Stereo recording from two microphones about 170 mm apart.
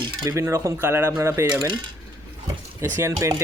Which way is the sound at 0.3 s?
15° right (ahead or behind).